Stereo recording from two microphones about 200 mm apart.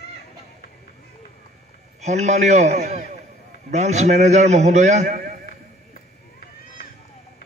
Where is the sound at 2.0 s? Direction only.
35° right (ahead or behind).